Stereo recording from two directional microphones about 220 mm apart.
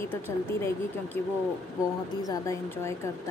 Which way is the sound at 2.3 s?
15° left (ahead or behind).